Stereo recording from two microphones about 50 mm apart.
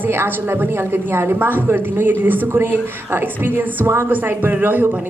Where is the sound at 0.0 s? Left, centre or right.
Right.